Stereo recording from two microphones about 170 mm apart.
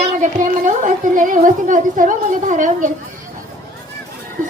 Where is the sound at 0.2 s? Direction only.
50° right (ahead or behind).